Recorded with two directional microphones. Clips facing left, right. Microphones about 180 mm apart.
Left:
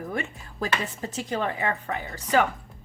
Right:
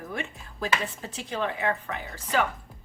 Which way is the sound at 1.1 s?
40° left (ahead or behind).